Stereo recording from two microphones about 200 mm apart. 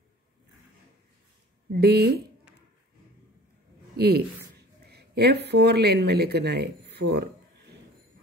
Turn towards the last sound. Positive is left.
turn(degrees=-55)  # may be behind; listen again after turning